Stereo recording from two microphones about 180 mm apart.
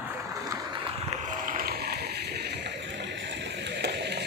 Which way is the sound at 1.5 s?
55° right (ahead or behind).